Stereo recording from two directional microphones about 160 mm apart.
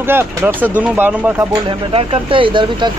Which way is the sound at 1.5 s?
35° right (ahead or behind).